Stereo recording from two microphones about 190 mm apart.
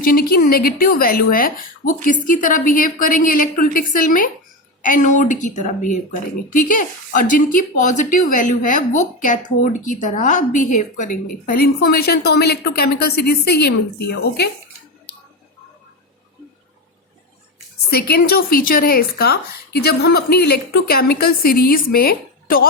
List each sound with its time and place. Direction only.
0.0 s a woman's voice: 50° left (ahead or behind)
17.9 s speech: 55° left (ahead or behind)